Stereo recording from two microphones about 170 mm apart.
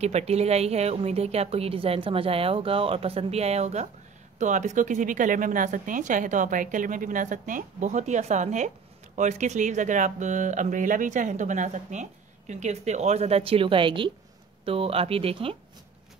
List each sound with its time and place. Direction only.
0.0 s a woman's voice: 40° right (ahead or behind)